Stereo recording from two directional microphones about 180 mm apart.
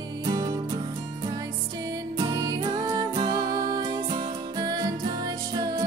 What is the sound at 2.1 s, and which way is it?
Music, 20° right (ahead or behind).